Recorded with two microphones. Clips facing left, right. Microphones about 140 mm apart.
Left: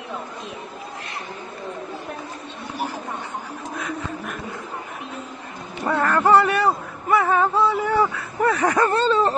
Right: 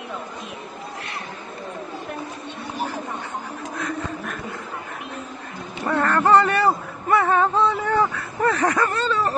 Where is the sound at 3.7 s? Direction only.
5° left (ahead or behind).